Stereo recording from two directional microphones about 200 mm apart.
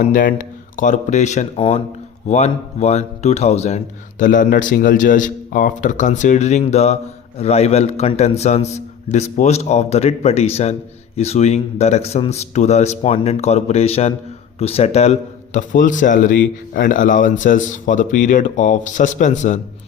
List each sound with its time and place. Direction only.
0.0 s a man's voice: 40° left (ahead or behind)